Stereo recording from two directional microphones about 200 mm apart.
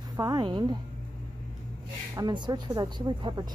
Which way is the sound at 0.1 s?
20° right (ahead or behind).